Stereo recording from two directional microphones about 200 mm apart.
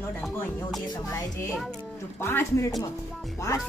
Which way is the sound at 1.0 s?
15° left (ahead or behind).